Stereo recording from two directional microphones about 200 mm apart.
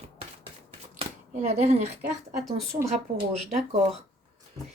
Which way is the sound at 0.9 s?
30° right (ahead or behind).